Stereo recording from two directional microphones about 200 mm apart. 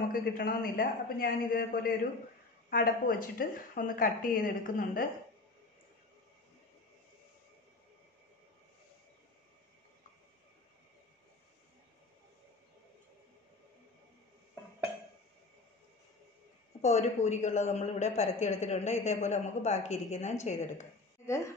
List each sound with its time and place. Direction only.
0.1 s speech: 45° left (ahead or behind)
16.8 s a woman's voice: 35° left (ahead or behind)